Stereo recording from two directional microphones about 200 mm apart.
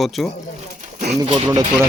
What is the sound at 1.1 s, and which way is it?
Speech, 20° right (ahead or behind).